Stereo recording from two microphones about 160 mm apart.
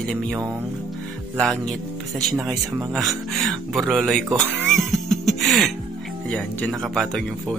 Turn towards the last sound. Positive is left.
turn(degrees=0)  # may be behind; listen again after turning